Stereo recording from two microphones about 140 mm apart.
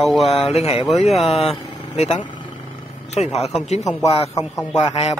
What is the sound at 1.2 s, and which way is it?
A man's voice, 45° left (ahead or behind).